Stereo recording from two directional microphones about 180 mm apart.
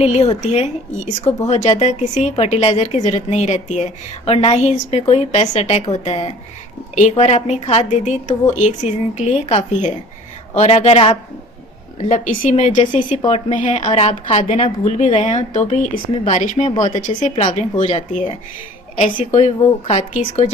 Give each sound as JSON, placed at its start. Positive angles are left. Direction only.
{"t": 0.0, "sound": "a woman's voice", "side_deg": 35}